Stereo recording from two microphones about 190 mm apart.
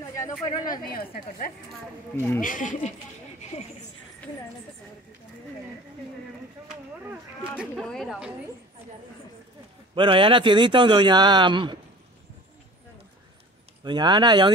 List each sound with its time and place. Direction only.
0.1 s speech: 20° left (ahead or behind)
0.9 s a woman's voice: 50° left (ahead or behind)
2.1 s speech: 10° left (ahead or behind)
2.4 s a woman's voice: 45° left (ahead or behind)
6.7 s speech: 5° right (ahead or behind)
9.9 s speech: 30° right (ahead or behind)
13.8 s speech: 25° right (ahead or behind)